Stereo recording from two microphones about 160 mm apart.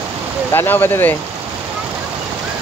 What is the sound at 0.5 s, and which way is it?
Speech, 15° left (ahead or behind).